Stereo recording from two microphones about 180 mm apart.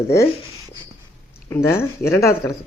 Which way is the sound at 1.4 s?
15° left (ahead or behind).